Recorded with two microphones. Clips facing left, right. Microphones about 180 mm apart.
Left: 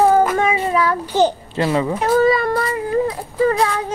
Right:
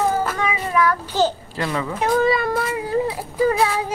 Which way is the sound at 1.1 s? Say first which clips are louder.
Left 4 dB; 15° left (ahead or behind).